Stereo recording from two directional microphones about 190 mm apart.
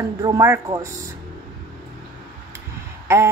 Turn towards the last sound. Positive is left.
turn(degrees=-15)  # may be behind; listen again after turning